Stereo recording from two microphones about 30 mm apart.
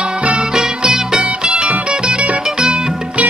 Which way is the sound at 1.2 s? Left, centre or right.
Right.